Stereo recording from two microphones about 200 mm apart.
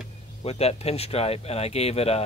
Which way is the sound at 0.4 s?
30° left (ahead or behind).